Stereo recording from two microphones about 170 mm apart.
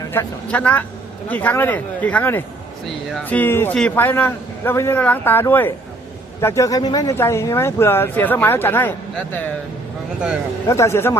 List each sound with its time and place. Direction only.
0.1 s speech: 10° left (ahead or behind)
10.2 s speech: 5° right (ahead or behind)
10.7 s speech: 15° left (ahead or behind)